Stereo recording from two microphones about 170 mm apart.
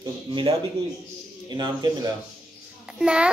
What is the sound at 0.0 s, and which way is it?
Music, 30° right (ahead or behind).